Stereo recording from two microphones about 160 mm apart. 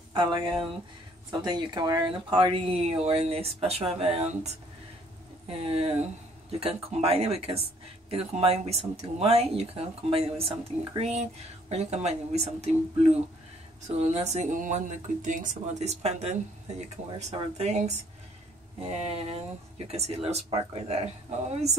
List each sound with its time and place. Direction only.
0.1 s speech: 30° right (ahead or behind)
13.8 s speech: 45° right (ahead or behind)